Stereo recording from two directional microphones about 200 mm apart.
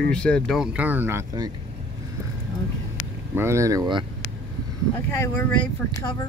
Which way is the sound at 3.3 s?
15° right (ahead or behind).